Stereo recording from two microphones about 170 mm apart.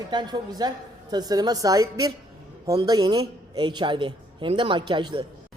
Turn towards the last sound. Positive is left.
turn(degrees=-25)  # may be behind; listen again after turning